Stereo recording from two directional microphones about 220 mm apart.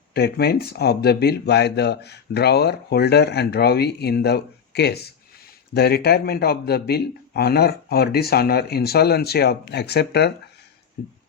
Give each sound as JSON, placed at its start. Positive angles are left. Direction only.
{"t": 0.1, "sound": "speech", "side_deg": 45}